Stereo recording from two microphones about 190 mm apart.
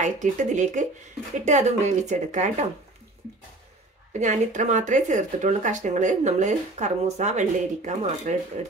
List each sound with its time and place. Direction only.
0.0 s speech: 40° right (ahead or behind)
4.1 s speech: 40° right (ahead or behind)